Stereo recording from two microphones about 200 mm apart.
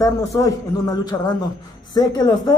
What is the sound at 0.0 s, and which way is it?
A man's voice, 15° left (ahead or behind).